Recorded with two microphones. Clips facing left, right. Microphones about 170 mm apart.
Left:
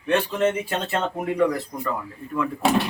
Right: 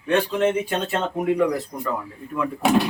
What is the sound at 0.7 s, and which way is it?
Speech, centre (ahead or behind).